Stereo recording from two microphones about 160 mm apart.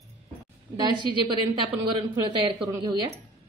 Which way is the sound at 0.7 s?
30° right (ahead or behind).